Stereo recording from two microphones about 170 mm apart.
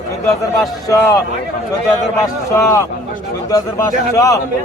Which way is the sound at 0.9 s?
20° left (ahead or behind).